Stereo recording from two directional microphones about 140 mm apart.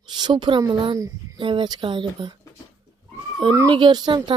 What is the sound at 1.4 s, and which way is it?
Speech, 35° right (ahead or behind).